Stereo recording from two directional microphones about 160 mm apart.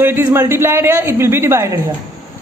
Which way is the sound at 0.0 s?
15° right (ahead or behind).